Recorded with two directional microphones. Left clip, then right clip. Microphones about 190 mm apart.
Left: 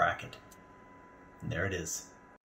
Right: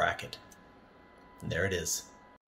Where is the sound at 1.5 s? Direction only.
15° right (ahead or behind).